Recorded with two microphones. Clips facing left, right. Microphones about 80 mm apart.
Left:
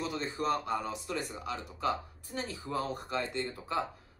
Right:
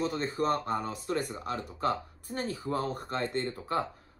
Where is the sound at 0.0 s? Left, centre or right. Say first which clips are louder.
Right 4 dB; right.